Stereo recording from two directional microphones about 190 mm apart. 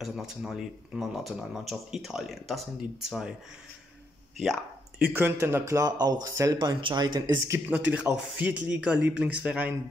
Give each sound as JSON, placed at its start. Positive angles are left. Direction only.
{"t": 0.0, "sound": "speech", "side_deg": 0}
{"t": 5.0, "sound": "a man's voice", "side_deg": -10}